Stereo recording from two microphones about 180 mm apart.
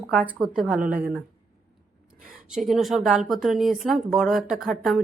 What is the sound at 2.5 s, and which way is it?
Speech, centre (ahead or behind).